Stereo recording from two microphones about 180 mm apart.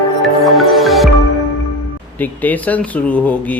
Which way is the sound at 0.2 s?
Centre (ahead or behind).